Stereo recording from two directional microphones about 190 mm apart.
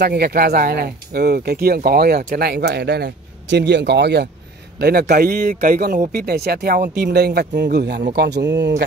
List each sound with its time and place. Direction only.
0.0 s a man's voice: 55° right (ahead or behind)